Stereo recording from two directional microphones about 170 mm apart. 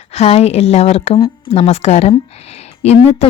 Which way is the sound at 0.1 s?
40° left (ahead or behind).